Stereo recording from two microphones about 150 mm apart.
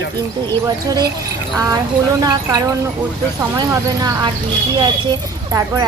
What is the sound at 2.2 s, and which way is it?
A woman's voice, 25° right (ahead or behind).